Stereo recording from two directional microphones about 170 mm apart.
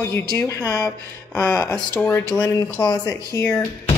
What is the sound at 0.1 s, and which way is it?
Speech, 20° left (ahead or behind).